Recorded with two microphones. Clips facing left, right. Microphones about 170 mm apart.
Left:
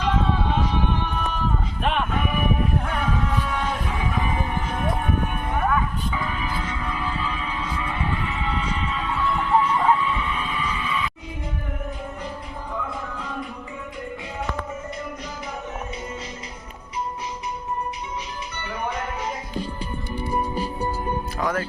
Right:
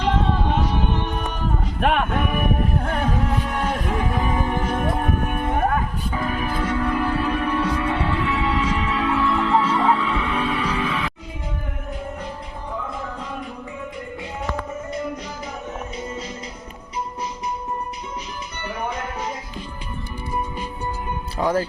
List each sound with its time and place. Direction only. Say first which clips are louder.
0.0 s music: right 2 dB; 50° right (ahead or behind)
0.9 s music: right 2 dB; 65° right (ahead or behind)
1.6 s music: right 4 dB; 55° right (ahead or behind); by 11.1 s 70° right (ahead or behind)
21.3 s music: right 7 dB; 30° right (ahead or behind)